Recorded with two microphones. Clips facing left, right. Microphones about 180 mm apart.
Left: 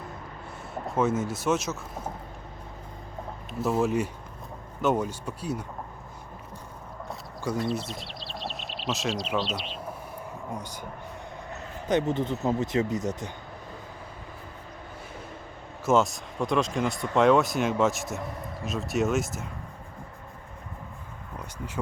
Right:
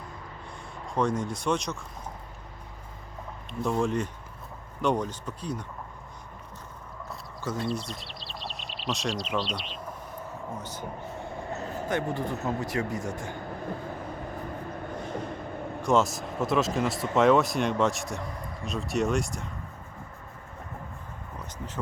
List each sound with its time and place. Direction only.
0.9 s speech: 5° left (ahead or behind)
3.6 s speech: 5° left (ahead or behind)
7.7 s speech: centre (ahead or behind)
10.5 s speech: 15° left (ahead or behind)
15.8 s speech: centre (ahead or behind)